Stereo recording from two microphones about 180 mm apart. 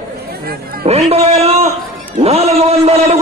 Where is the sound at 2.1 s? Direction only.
35° right (ahead or behind).